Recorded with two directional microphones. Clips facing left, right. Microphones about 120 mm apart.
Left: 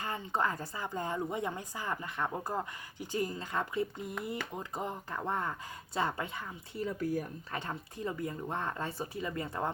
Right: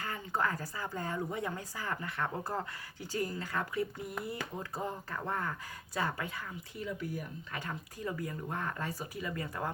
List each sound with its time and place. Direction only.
0.0 s a woman's voice: 20° left (ahead or behind)
6.8 s speech: 40° left (ahead or behind)
7.6 s a woman's voice: 25° left (ahead or behind)